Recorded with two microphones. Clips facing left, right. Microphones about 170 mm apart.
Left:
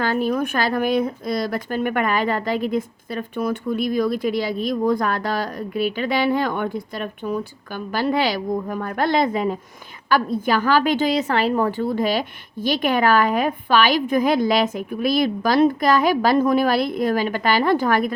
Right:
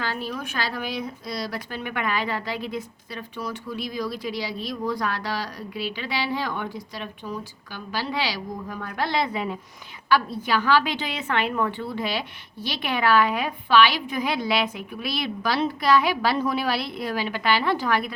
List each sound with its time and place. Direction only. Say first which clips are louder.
0.0 s speech: left 9 dB; 50° left (ahead or behind)